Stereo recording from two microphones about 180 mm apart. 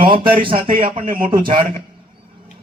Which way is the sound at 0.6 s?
50° right (ahead or behind).